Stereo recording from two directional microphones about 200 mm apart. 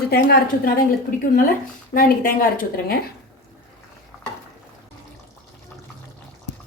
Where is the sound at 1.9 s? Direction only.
45° left (ahead or behind).